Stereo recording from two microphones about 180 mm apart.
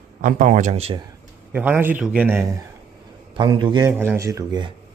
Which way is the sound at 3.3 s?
25° right (ahead or behind).